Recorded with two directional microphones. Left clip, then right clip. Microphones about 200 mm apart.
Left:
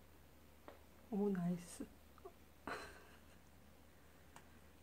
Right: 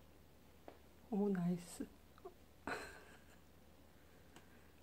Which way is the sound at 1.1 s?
20° right (ahead or behind).